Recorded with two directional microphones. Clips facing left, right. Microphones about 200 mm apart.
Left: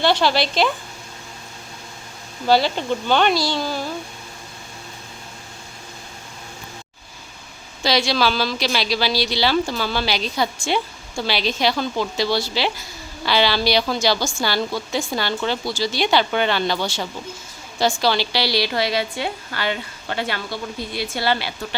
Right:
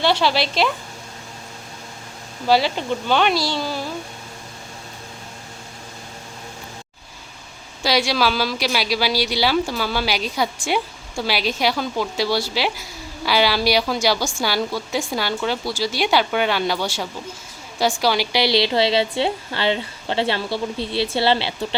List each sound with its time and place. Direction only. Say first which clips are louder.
0.0 s speech: left 1 dB; 5° right (ahead or behind)
2.5 s speech: left 1 dB; 5° right (ahead or behind)
7.8 s a woman's voice: even; 10° right (ahead or behind); by 21.8 s 25° right (ahead or behind)